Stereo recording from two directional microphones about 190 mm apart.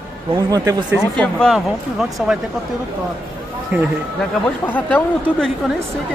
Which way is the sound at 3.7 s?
10° right (ahead or behind).